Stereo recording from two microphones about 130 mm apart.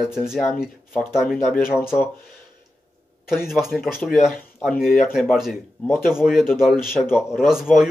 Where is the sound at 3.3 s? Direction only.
5° right (ahead or behind).